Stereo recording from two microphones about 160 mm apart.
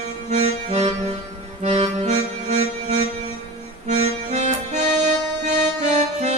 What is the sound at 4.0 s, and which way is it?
Music, 45° right (ahead or behind).